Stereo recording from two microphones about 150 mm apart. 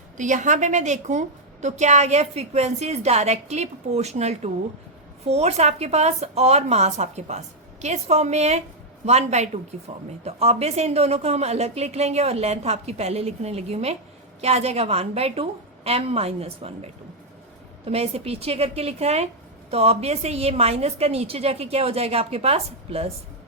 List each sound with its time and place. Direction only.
0.2 s a woman's voice: 55° right (ahead or behind)